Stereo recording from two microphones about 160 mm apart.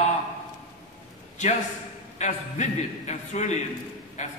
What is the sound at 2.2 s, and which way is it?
A man's voice, 45° left (ahead or behind).